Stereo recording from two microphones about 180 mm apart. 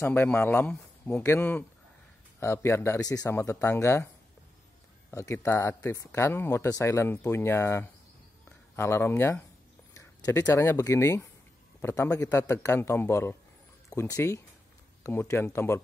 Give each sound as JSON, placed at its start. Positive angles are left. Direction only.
{"t": 0.0, "sound": "speech", "side_deg": 10}
{"t": 5.1, "sound": "speech", "side_deg": 15}